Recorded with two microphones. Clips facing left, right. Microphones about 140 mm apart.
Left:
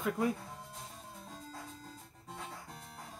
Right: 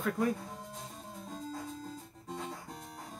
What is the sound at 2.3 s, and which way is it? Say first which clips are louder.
Music: right 6 dB; 5° left (ahead or behind).